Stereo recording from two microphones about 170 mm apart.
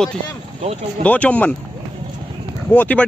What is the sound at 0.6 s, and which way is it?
Speech, 35° right (ahead or behind).